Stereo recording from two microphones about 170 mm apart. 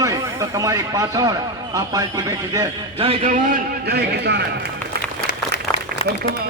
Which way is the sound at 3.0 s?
35° right (ahead or behind).